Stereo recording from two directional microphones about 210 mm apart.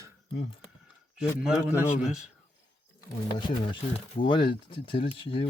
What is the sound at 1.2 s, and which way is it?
A man's voice, 5° right (ahead or behind).